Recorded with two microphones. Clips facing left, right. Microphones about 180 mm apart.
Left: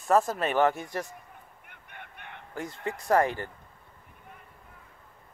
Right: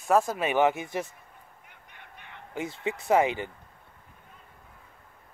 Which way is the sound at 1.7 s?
60° left (ahead or behind).